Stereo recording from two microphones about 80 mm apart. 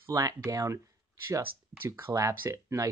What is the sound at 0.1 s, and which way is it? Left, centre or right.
Speech, right.